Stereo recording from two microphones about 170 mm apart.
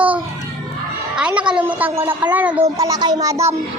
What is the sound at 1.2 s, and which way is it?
A woman's voice, 5° right (ahead or behind).